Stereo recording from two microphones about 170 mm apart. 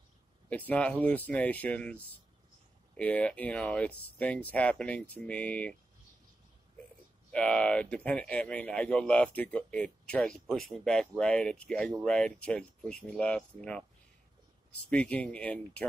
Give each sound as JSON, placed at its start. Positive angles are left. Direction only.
{"t": 0.5, "sound": "a man's voice", "side_deg": 10}
{"t": 7.3, "sound": "a man's voice", "side_deg": 5}
{"t": 14.9, "sound": "a man's voice", "side_deg": 5}